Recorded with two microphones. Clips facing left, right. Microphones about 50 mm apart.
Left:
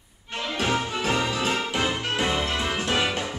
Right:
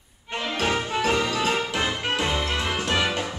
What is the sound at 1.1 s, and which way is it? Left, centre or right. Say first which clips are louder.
Music: left 1 dB; left.